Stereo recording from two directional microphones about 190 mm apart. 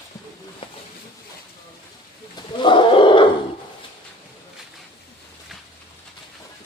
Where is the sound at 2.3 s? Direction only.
25° left (ahead or behind).